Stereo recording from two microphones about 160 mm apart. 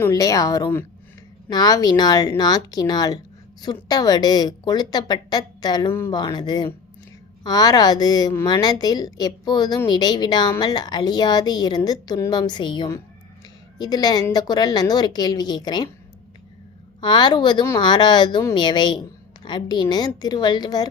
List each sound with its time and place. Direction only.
0.0 s a woman's voice: 20° left (ahead or behind)
17.0 s a woman's voice: 30° left (ahead or behind)